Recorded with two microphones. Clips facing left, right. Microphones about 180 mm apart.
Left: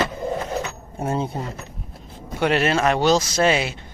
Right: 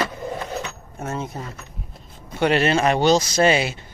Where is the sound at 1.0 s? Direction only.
30° left (ahead or behind).